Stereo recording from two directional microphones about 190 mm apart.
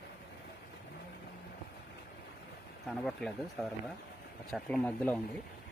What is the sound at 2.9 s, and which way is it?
Speech, centre (ahead or behind).